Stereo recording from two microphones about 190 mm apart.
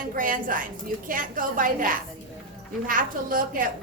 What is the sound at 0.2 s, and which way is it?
A woman's voice, 45° right (ahead or behind).